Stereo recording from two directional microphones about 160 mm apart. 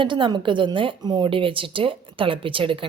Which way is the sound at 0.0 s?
30° right (ahead or behind).